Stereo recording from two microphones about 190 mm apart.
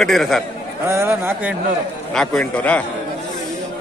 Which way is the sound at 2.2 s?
5° left (ahead or behind).